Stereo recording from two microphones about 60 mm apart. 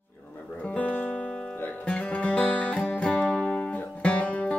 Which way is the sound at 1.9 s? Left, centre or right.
Left.